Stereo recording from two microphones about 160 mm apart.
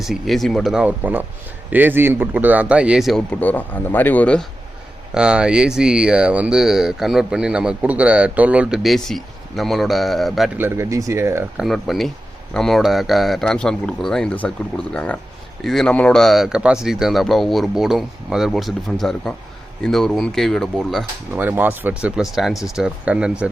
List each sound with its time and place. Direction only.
0.0 s speech: centre (ahead or behind)
3.4 s speech: 10° left (ahead or behind)
5.1 s speech: 5° right (ahead or behind)
10.6 s speech: 20° right (ahead or behind)
11.5 s speech: centre (ahead or behind)
21.3 s speech: 10° right (ahead or behind)